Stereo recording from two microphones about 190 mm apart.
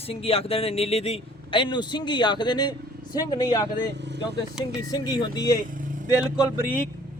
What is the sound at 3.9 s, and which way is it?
Vehicle, 65° right (ahead or behind).